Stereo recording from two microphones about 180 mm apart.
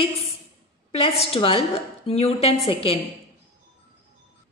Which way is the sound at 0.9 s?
35° left (ahead or behind).